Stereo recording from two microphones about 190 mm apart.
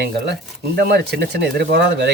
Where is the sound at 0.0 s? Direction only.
60° right (ahead or behind).